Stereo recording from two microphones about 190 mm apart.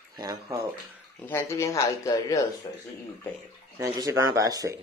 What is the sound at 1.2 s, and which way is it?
Speech, 15° left (ahead or behind).